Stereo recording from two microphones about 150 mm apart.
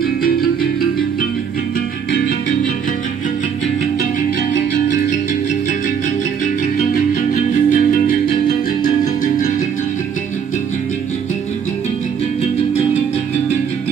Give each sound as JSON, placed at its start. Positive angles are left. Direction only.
{"t": 0.0, "sound": "music", "side_deg": 90}
{"t": 7.3, "sound": "music", "side_deg": 60}